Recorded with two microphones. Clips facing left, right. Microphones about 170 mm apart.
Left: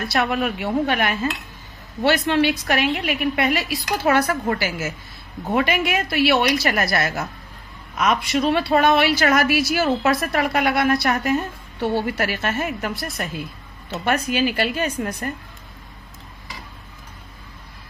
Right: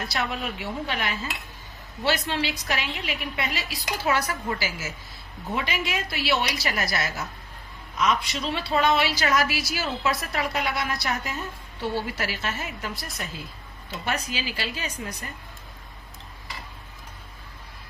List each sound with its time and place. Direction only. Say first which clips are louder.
0.1 s a woman's voice: left 8 dB; 60° left (ahead or behind)